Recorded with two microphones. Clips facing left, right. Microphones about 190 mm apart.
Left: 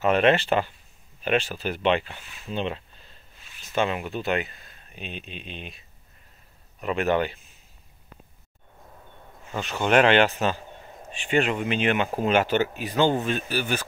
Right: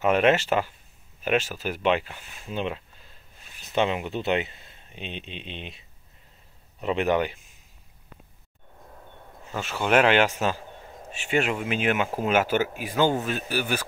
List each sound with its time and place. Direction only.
0.0 s speech: 10° right (ahead or behind)
3.7 s speech: 20° right (ahead or behind)
6.8 s speech: 20° right (ahead or behind)
9.6 s speech: 5° right (ahead or behind)